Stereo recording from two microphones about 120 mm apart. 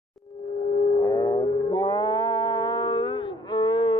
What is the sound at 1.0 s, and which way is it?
Music, 30° left (ahead or behind).